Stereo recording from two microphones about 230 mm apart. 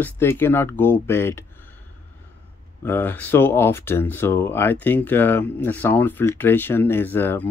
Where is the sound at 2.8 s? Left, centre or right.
Centre.